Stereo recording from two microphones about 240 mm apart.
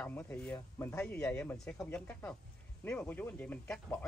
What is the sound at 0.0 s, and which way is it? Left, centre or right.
Speech, centre.